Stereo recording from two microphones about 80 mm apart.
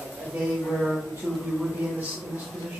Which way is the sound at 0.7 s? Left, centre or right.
Centre.